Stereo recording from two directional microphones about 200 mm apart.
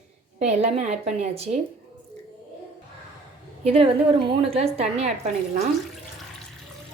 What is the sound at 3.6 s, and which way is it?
A woman's voice, 30° right (ahead or behind).